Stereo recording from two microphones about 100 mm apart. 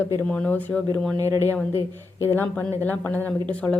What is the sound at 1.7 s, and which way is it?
Speech, 25° right (ahead or behind).